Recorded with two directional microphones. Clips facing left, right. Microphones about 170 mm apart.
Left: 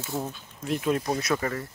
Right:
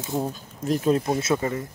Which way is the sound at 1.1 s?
20° right (ahead or behind).